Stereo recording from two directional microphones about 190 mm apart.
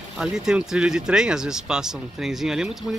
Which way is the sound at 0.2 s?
5° right (ahead or behind).